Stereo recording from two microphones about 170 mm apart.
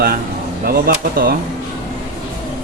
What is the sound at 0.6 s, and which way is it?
Speech, 60° right (ahead or behind).